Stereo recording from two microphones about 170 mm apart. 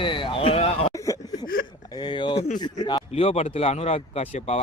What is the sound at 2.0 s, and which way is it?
Speech, 30° left (ahead or behind).